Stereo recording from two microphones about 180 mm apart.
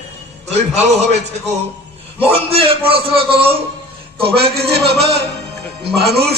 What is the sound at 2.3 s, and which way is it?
A man's voice, 30° right (ahead or behind).